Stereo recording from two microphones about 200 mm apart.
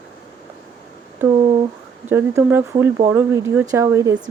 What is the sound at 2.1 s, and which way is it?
Speech, 10° right (ahead or behind).